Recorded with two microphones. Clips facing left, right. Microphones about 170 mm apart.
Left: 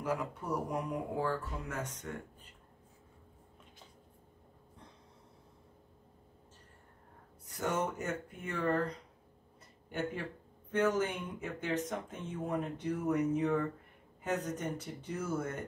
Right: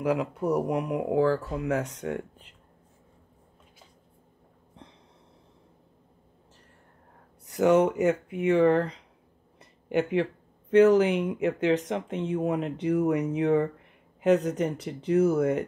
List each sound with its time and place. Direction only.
0.0 s speech: 85° right
7.4 s speech: 75° right (ahead or behind)
9.6 s a sound: 85° right
10.7 s speech: 75° right (ahead or behind)